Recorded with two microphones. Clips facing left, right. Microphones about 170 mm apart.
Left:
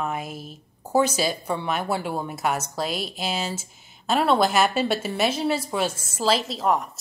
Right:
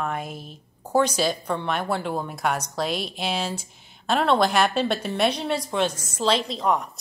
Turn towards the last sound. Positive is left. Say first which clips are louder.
# even
turn(degrees=0)  # may be behind; listen again after turning